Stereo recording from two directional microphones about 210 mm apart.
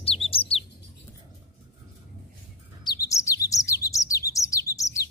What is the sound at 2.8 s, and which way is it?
Bird, 15° left (ahead or behind).